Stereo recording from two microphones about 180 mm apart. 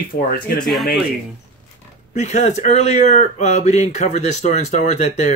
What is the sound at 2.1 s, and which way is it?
Speech, 40° left (ahead or behind).